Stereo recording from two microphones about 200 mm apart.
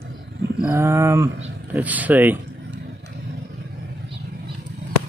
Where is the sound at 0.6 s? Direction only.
10° right (ahead or behind).